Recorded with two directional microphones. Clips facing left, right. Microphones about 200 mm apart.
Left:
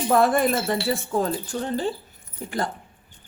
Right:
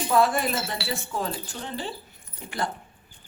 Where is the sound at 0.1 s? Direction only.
55° left (ahead or behind).